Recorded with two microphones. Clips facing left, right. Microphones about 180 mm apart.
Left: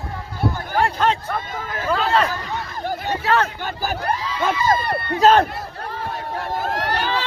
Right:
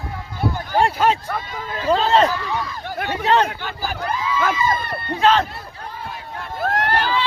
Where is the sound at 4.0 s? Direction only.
65° left (ahead or behind).